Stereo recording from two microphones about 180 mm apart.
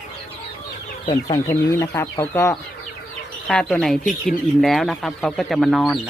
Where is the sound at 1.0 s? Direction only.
35° left (ahead or behind).